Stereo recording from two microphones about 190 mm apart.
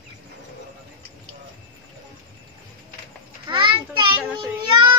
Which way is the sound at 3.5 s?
25° right (ahead or behind).